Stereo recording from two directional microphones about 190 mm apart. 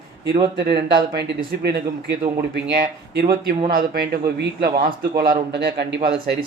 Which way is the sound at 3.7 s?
55° right (ahead or behind).